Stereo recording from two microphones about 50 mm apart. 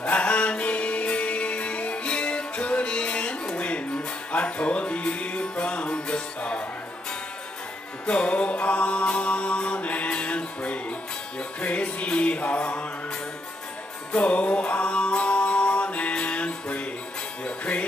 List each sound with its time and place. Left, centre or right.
0.0 s music: left
8.1 s music: left
14.1 s music: left